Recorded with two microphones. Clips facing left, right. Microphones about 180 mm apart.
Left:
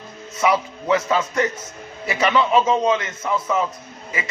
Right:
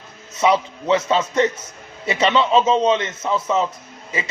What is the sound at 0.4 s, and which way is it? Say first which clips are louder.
A man's voice: right 2 dB; 25° right (ahead or behind).